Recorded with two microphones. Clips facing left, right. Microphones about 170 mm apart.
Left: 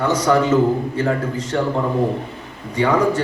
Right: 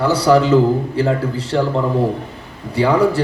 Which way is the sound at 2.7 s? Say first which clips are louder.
Right 2 dB; 30° right (ahead or behind).